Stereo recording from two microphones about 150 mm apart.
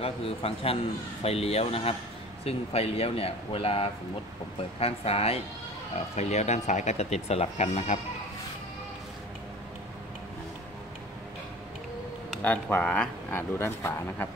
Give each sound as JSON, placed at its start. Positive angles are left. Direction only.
{"t": 0.0, "sound": "speech", "side_deg": 40}
{"t": 12.3, "sound": "speech", "side_deg": 10}